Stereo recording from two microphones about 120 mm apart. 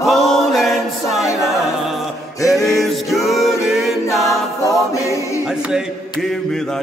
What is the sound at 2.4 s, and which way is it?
Music, centre (ahead or behind).